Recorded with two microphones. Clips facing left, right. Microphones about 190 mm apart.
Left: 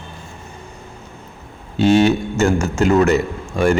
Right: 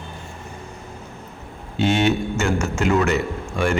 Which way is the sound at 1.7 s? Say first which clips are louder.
Left 5 dB; 35° left (ahead or behind).